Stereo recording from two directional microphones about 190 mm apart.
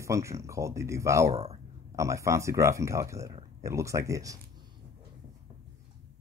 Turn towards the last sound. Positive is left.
turn(degrees=-15)  # may be behind; listen again after turning